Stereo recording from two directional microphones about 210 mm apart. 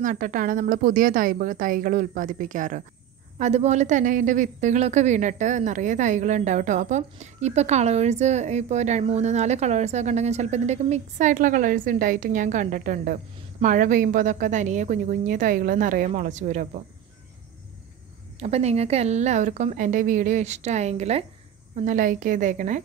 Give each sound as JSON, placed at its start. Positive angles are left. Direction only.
{"t": 0.0, "sound": "a woman's voice", "side_deg": -40}
{"t": 18.4, "sound": "a woman's voice", "side_deg": -30}